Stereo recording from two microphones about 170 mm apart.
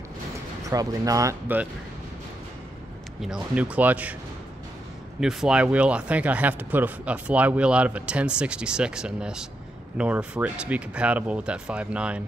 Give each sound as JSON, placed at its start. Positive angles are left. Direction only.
{"t": 0.7, "sound": "speech", "side_deg": -20}
{"t": 3.2, "sound": "speech", "side_deg": -5}
{"t": 5.2, "sound": "speech", "side_deg": -5}